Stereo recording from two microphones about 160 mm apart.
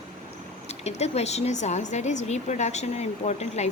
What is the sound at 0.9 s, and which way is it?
A woman's voice, 45° left (ahead or behind).